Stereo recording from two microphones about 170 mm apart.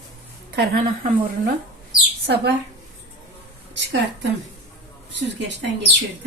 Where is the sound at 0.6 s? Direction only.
55° right (ahead or behind).